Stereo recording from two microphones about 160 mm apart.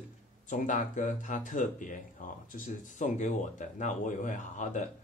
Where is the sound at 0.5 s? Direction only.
50° left (ahead or behind).